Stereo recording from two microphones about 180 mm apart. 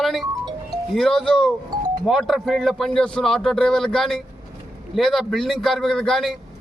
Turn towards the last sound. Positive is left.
turn(degrees=0)  # may be behind; listen again after turning